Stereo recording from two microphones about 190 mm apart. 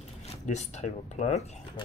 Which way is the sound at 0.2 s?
35° left (ahead or behind).